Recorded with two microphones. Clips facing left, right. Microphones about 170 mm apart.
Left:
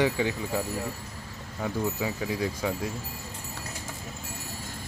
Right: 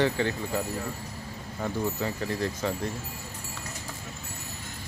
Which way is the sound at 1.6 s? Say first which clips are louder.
Even; 5° left (ahead or behind).